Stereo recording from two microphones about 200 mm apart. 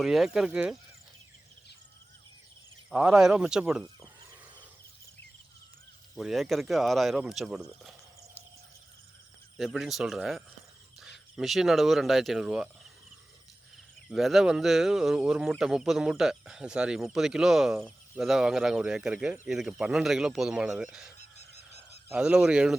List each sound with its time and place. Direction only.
0.0 s speech: centre (ahead or behind)
2.9 s speech: 5° right (ahead or behind)
6.1 s speech: centre (ahead or behind)
9.6 s speech: centre (ahead or behind)
14.1 s speech: centre (ahead or behind)
21.2 s goose: 35° left (ahead or behind)
22.1 s speech: 5° right (ahead or behind)